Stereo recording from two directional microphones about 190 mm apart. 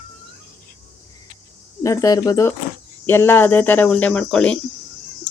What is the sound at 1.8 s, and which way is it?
Speech, 15° left (ahead or behind).